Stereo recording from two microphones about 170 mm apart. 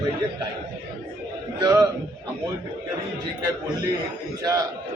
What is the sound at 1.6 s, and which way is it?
Speech, 20° right (ahead or behind).